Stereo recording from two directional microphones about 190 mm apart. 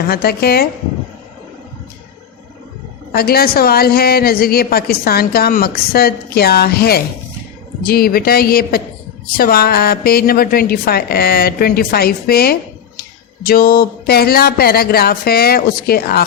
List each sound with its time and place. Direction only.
0.1 s a woman's voice: 55° left (ahead or behind)
3.1 s a woman's voice: 55° left (ahead or behind)